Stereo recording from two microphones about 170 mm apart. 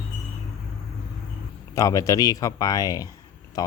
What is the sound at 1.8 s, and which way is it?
Speech, 20° left (ahead or behind).